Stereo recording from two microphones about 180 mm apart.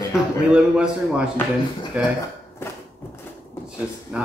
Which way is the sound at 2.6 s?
15° left (ahead or behind).